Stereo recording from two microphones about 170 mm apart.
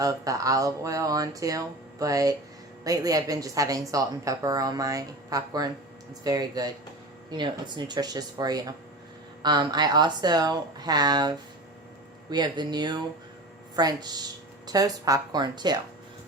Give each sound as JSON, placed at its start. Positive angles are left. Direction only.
{"t": 0.0, "sound": "a woman's voice", "side_deg": -20}